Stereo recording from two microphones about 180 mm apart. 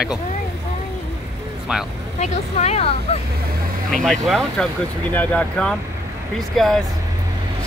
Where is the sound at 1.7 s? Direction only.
Centre (ahead or behind).